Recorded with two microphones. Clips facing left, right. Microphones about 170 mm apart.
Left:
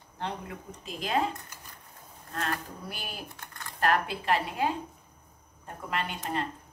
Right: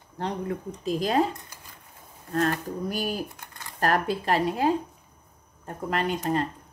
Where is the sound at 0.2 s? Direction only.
40° right (ahead or behind).